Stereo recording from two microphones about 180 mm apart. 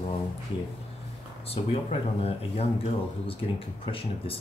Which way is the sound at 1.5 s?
35° left (ahead or behind).